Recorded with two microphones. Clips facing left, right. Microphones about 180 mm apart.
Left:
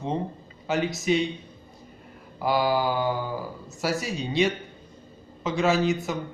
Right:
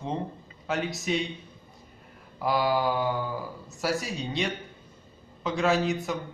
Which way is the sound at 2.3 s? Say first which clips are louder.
Left 2 dB; centre (ahead or behind).